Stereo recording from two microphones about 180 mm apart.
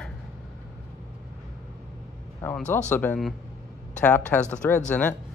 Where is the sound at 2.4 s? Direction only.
10° left (ahead or behind).